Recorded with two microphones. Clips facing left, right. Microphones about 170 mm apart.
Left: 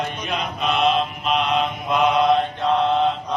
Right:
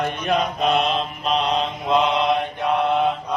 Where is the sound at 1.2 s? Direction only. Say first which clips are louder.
Right 2 dB; 35° right (ahead or behind).